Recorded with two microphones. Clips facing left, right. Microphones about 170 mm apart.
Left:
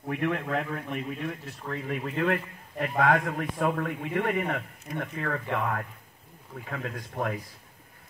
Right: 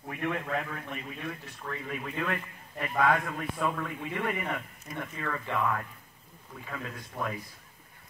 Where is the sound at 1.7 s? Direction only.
45° left (ahead or behind).